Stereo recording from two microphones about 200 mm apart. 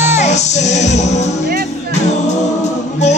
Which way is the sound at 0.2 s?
35° left (ahead or behind).